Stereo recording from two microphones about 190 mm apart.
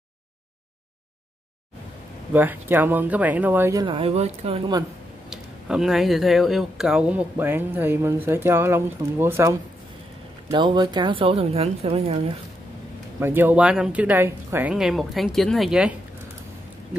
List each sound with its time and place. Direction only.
2.3 s speech: 10° right (ahead or behind)
3.8 s speech: 30° right (ahead or behind)
5.3 s speech: centre (ahead or behind); by 12.2 s 35° right (ahead or behind)
13.2 s speech: 10° right (ahead or behind)